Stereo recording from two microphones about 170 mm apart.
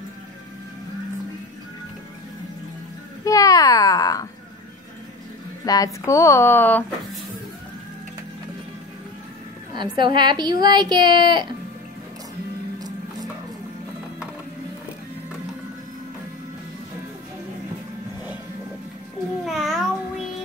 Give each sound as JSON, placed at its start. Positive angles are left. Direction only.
{"t": 3.3, "sound": "a sound", "side_deg": 20}
{"t": 5.7, "sound": "speech", "side_deg": 20}
{"t": 9.8, "sound": "a woman's voice", "side_deg": -25}
{"t": 12.7, "sound": "music", "side_deg": -20}
{"t": 19.4, "sound": "babbling", "side_deg": 0}